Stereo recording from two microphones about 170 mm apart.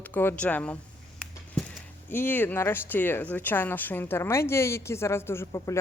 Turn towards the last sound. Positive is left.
turn(degrees=20)  # may be behind; listen again after turning